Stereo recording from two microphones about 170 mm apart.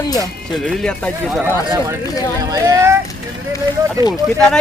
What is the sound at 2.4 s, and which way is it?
Speech, 20° right (ahead or behind).